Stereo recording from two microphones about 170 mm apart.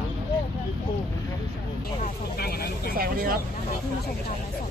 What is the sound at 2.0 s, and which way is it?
Vehicle, 65° left (ahead or behind).